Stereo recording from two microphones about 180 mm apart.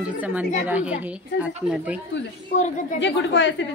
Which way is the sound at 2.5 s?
45° left (ahead or behind).